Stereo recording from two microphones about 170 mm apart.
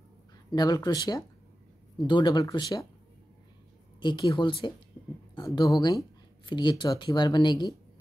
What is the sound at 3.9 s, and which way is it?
Speech, 25° left (ahead or behind).